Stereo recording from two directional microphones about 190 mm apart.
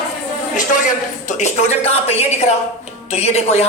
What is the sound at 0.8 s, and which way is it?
A woman's voice, 40° left (ahead or behind).